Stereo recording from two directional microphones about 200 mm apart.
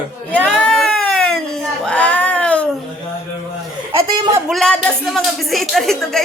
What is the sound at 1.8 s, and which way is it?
Speech, 5° left (ahead or behind).